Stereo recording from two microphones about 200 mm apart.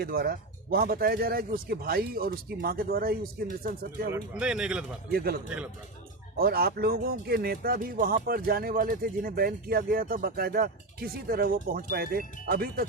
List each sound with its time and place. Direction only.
0.0 s speech: 50° right (ahead or behind)
4.1 s speech: 5° right (ahead or behind)
5.1 s speech: 50° right (ahead or behind)